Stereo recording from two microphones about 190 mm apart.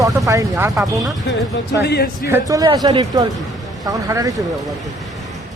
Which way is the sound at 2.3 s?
15° right (ahead or behind).